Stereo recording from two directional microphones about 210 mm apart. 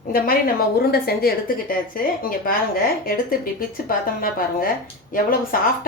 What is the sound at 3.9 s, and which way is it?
A woman's voice, 45° left (ahead or behind).